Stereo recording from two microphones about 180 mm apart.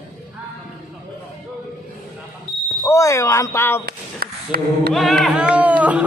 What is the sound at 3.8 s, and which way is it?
Speech, 60° right (ahead or behind).